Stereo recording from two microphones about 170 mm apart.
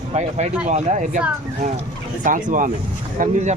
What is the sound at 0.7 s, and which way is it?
Speech, 45° right (ahead or behind).